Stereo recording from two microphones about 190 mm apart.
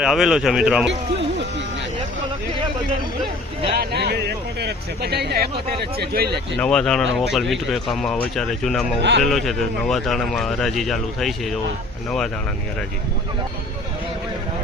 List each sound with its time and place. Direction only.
0.0 s speech: centre (ahead or behind)
3.8 s speech: 55° right (ahead or behind)
6.6 s speech: 5° left (ahead or behind)
9.0 s speech: 65° right (ahead or behind)
9.2 s speech: centre (ahead or behind)